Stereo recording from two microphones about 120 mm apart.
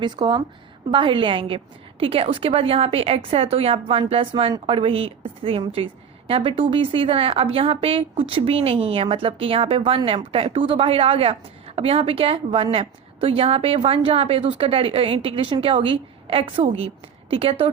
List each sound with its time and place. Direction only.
0.0 s a woman's voice: 40° right (ahead or behind)